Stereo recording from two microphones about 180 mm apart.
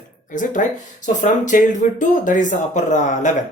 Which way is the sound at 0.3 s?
45° left (ahead or behind).